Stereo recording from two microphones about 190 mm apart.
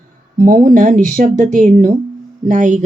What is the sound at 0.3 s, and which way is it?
Speech, 45° right (ahead or behind).